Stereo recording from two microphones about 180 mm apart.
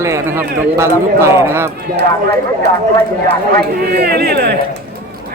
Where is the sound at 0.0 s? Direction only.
15° right (ahead or behind).